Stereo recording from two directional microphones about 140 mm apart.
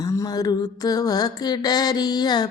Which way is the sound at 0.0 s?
25° left (ahead or behind).